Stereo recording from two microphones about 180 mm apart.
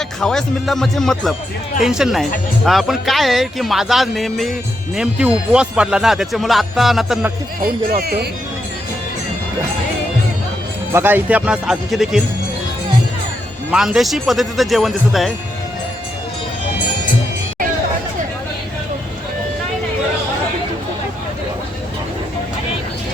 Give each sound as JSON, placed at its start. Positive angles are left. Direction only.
{"t": 0.2, "sound": "speech", "side_deg": 5}
{"t": 7.6, "sound": "speech", "side_deg": -55}
{"t": 10.9, "sound": "speech", "side_deg": -10}
{"t": 13.7, "sound": "speech", "side_deg": -5}